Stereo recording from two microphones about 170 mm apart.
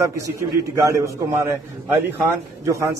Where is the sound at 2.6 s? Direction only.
15° right (ahead or behind).